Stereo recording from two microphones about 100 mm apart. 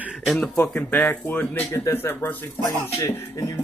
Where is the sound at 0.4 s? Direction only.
15° left (ahead or behind).